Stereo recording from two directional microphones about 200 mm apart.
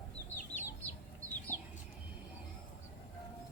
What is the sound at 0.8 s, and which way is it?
Chicken, 5° left (ahead or behind).